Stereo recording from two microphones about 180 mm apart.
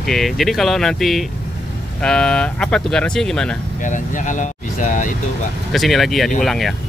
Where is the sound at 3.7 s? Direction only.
45° left (ahead or behind).